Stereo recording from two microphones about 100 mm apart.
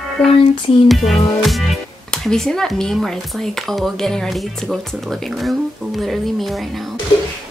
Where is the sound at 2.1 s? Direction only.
5° left (ahead or behind).